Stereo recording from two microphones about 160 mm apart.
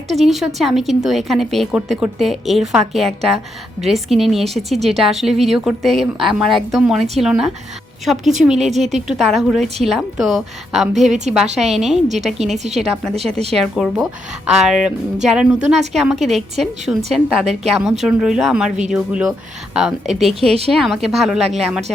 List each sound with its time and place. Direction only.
0.1 s a woman's voice: centre (ahead or behind)
8.5 s a woman's voice: 45° right (ahead or behind)
9.0 s a woman's voice: centre (ahead or behind)
12.5 s a woman's voice: 45° right (ahead or behind)
13.5 s a woman's voice: centre (ahead or behind)
16.9 s speech: 10° right (ahead or behind)
17.2 s a woman's voice: centre (ahead or behind)